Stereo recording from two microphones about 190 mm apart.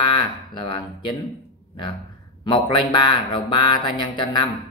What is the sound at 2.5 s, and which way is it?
Speech, 25° left (ahead or behind).